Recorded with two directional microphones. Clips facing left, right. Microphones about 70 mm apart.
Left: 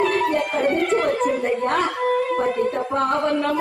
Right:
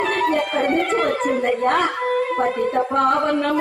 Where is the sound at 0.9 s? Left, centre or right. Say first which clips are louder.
Even; right.